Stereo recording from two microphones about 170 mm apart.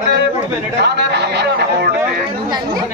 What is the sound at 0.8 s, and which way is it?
A man's voice, 80° right.